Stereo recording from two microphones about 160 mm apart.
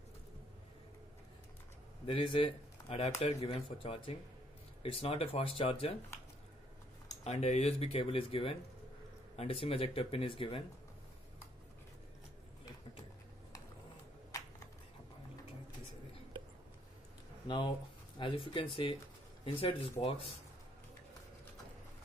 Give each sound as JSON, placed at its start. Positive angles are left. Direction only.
{"t": 2.0, "sound": "speech", "side_deg": 35}
{"t": 7.2, "sound": "speech", "side_deg": 45}
{"t": 17.5, "sound": "speech", "side_deg": 30}